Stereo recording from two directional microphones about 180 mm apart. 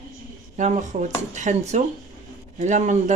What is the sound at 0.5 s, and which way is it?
Speech, 40° right (ahead or behind).